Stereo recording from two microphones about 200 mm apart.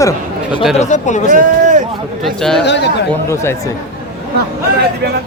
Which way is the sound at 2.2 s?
Centre (ahead or behind).